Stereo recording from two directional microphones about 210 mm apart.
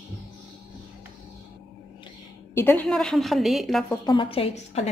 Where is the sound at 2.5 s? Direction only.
10° left (ahead or behind).